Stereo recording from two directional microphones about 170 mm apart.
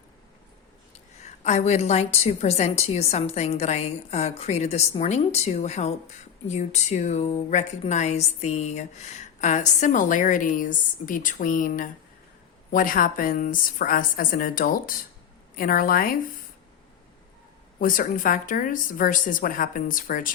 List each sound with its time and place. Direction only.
0.9 s a woman's voice: 40° left (ahead or behind); by 16.1 s 55° left (ahead or behind)
17.7 s a woman's voice: 55° left (ahead or behind)